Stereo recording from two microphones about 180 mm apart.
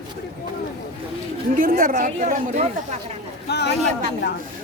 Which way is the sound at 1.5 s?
55° right (ahead or behind).